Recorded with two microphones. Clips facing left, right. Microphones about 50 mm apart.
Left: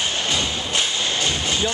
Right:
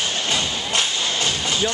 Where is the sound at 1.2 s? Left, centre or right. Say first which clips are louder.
Right 1 dB; left.